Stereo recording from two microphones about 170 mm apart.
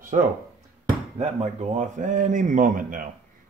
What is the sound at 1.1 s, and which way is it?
Speech, 40° right (ahead or behind).